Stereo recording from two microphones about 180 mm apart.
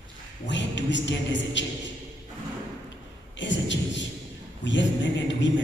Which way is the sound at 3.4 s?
90° left.